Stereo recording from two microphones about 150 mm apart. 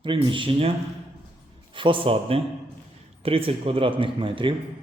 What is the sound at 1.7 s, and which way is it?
Speech, 35° right (ahead or behind).